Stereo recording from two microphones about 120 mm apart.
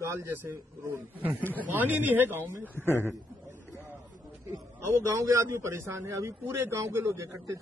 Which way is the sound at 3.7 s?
20° right (ahead or behind).